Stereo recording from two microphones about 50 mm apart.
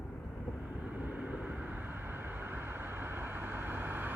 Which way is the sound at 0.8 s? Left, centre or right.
Right.